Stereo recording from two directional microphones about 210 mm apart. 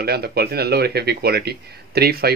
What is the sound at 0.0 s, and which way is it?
Speech, 50° right (ahead or behind).